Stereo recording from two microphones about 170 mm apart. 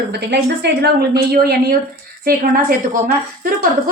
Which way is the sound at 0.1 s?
75° right (ahead or behind).